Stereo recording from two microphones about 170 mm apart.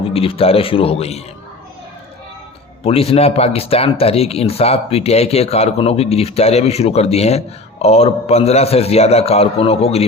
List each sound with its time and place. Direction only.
0.0 s speech: 35° left (ahead or behind)
2.8 s speech: 35° left (ahead or behind)